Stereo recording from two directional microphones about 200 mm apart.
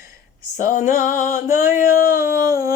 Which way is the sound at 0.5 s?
40° left (ahead or behind).